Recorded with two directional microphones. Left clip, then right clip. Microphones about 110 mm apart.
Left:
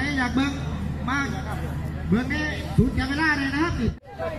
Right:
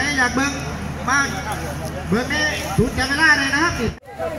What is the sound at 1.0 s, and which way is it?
Speech, 25° left (ahead or behind).